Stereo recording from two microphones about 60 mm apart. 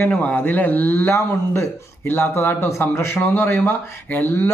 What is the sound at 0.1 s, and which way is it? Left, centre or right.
A man's voice, left.